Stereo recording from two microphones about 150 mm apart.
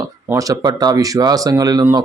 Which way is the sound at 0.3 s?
20° right (ahead or behind).